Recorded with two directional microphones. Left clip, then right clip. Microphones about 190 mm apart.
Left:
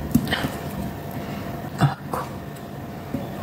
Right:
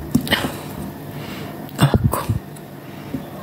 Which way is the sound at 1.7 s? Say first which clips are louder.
Right 6 dB; 60° right (ahead or behind).